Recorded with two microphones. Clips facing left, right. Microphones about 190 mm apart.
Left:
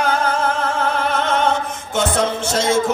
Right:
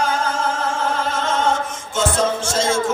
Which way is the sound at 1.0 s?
60° left (ahead or behind).